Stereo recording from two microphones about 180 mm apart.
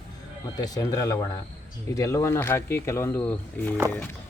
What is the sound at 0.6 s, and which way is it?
A man's voice, 20° left (ahead or behind).